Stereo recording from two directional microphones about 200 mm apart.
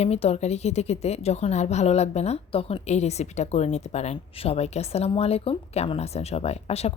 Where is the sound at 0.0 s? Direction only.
30° left (ahead or behind).